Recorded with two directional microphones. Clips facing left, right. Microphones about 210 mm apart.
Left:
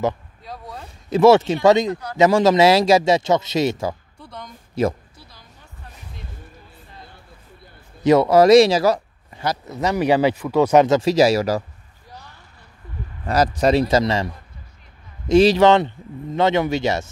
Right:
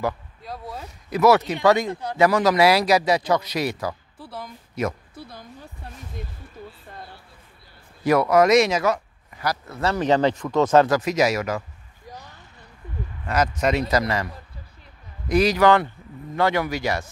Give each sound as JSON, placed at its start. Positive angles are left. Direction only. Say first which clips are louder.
{"t": 0.4, "sound": "speech", "louder": "right 1 dB", "side_deg": 0}
{"t": 1.1, "sound": "speech", "louder": "left 5 dB", "side_deg": 25}
{"t": 4.2, "sound": "speech", "louder": "right 1 dB", "side_deg": -5}
{"t": 4.8, "sound": "speech", "louder": "left 6 dB", "side_deg": 30}
{"t": 8.0, "sound": "speech", "louder": "left 4 dB", "side_deg": 25}
{"t": 11.0, "sound": "a man's voice", "louder": "left 6 dB", "side_deg": 30}
{"t": 13.2, "sound": "a man's voice", "louder": "left 4 dB", "side_deg": 35}